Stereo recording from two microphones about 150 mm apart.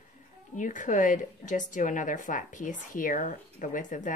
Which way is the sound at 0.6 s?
60° left (ahead or behind).